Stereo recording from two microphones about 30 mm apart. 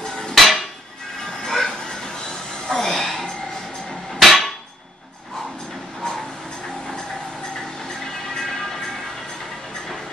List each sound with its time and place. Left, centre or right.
0.1 s hammer: centre
0.4 s hammer: centre
1.5 s music: centre
1.9 s a sound: left
2.9 s a sound: centre
4.1 s hammer: centre
8.4 s vehicle: centre